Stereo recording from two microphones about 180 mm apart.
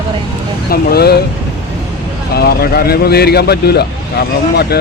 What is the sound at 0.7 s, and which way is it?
Speech, 60° left (ahead or behind).